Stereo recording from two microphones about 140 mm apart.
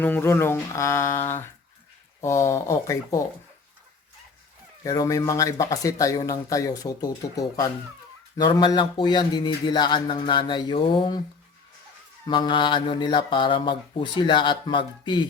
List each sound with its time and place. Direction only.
0.0 s speech: 15° left (ahead or behind)
4.8 s speech: 25° left (ahead or behind)
12.3 s speech: 35° left (ahead or behind)